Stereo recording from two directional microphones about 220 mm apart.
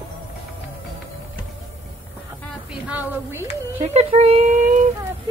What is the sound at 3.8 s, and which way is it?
Speech, 30° right (ahead or behind).